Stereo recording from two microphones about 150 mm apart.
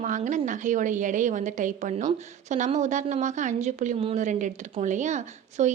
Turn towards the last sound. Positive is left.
turn(degrees=-50)  # may be behind; listen again after turning